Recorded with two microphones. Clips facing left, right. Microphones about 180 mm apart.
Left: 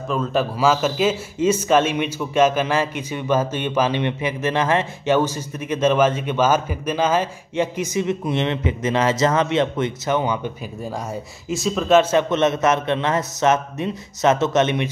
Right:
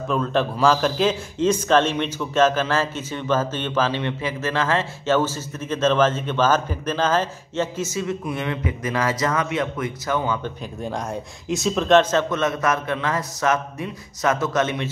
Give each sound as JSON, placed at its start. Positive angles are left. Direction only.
{"t": 0.1, "sound": "a man's voice", "side_deg": 5}
{"t": 11.4, "sound": "a man's voice", "side_deg": 0}